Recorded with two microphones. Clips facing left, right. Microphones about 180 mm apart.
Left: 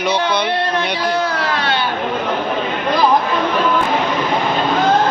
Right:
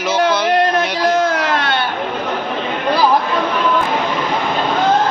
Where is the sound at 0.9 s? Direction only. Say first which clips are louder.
Right 3 dB; 45° right (ahead or behind).